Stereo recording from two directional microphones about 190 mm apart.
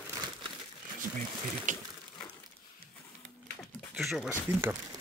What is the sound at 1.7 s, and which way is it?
Speech, 40° right (ahead or behind).